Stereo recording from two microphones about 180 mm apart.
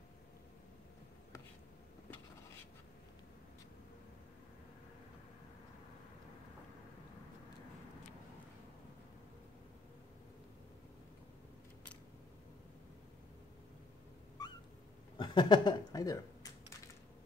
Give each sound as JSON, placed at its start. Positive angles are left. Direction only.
{"t": 14.4, "sound": "cat", "side_deg": 20}
{"t": 15.1, "sound": "speech", "side_deg": 25}